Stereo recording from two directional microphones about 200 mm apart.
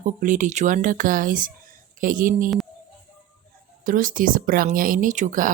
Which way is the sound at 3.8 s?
40° right (ahead or behind).